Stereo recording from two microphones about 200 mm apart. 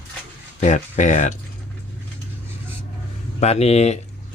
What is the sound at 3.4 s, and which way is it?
Speech, 30° left (ahead or behind).